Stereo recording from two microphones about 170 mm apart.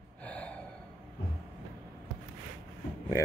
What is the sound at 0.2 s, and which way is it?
Gasp, 5° left (ahead or behind).